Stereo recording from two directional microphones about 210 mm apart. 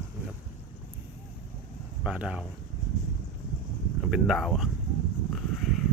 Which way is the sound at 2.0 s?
5° right (ahead or behind).